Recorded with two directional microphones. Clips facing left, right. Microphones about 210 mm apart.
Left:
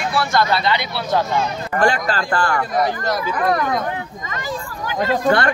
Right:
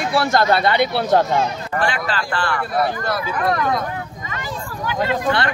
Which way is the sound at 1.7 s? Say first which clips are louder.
Left 4 dB; 45° left (ahead or behind).